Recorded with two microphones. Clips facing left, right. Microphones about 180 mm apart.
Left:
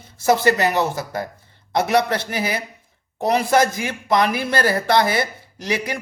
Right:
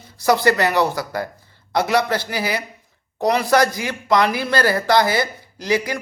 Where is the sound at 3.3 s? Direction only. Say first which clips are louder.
Even; 20° left (ahead or behind).